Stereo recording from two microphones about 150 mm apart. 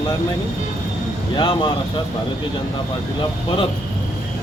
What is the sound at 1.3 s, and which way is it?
Speech, 30° left (ahead or behind).